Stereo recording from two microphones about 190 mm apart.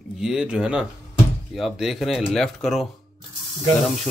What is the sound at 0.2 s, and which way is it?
Speech, 5° right (ahead or behind).